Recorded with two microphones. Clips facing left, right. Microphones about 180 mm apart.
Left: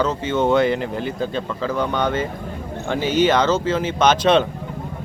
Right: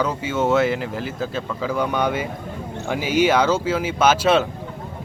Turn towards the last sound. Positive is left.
turn(degrees=-5)  # may be behind; listen again after turning